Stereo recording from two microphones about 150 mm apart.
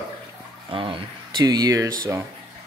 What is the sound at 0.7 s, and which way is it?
Speech, 35° right (ahead or behind).